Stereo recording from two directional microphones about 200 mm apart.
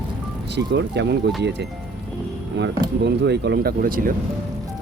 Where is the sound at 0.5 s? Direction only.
60° right (ahead or behind).